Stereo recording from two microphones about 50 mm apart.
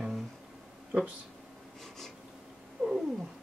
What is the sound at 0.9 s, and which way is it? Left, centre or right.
Speech, right.